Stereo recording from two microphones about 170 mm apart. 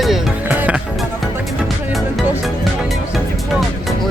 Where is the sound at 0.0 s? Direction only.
5° right (ahead or behind).